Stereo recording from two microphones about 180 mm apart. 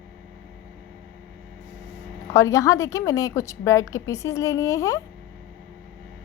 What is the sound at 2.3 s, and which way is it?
A woman's voice, 15° left (ahead or behind).